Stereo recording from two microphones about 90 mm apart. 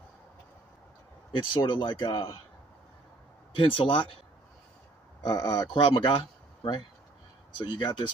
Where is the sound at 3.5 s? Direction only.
75° left (ahead or behind).